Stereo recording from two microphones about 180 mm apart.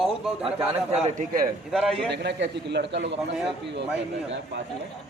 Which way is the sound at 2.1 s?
70° right (ahead or behind).